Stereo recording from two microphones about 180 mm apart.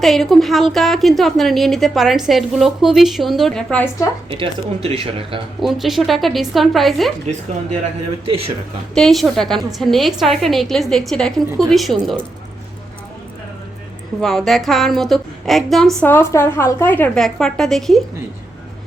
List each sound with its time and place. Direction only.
0.0 s a woman's voice: centre (ahead or behind)
4.3 s speech: 30° right (ahead or behind)
5.5 s a woman's voice: centre (ahead or behind)
8.2 s speech: 30° right (ahead or behind)
9.0 s a woman's voice: centre (ahead or behind)
14.2 s a woman's voice: centre (ahead or behind)